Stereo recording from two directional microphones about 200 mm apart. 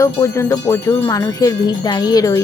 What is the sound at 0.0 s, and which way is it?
Wind chime, 15° left (ahead or behind).